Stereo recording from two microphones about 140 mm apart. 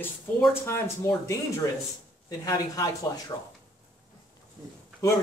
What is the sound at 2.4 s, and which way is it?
Speech, 25° left (ahead or behind).